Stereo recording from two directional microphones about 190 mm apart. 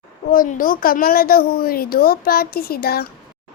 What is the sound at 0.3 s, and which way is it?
A woman's voice, 45° left (ahead or behind).